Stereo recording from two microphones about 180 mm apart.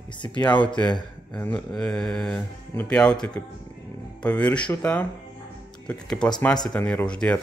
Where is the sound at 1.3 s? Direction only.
5° left (ahead or behind).